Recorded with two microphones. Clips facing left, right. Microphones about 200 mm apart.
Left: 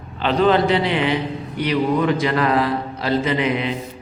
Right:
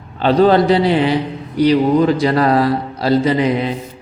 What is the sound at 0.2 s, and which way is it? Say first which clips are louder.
A man's voice: right 5 dB; 35° right (ahead or behind).